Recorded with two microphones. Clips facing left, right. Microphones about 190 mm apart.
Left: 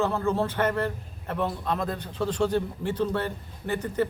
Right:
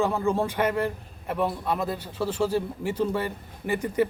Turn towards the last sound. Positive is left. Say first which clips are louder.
# right 2 dB
turn(degrees=-10)  # may be behind; listen again after turning